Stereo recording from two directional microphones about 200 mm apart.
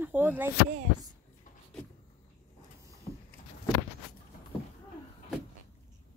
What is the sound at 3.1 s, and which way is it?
Vehicle, 30° left (ahead or behind).